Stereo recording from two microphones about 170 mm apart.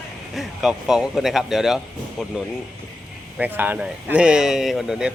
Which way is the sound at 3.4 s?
10° right (ahead or behind).